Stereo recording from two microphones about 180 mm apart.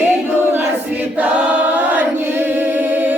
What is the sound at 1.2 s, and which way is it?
Choir, 5° right (ahead or behind).